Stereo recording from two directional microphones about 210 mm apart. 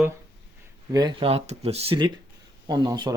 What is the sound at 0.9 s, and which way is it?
Speech, 20° right (ahead or behind).